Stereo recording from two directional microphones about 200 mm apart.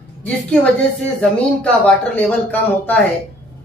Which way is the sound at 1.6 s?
5° left (ahead or behind).